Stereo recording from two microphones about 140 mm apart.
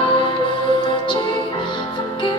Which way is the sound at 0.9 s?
35° left (ahead or behind).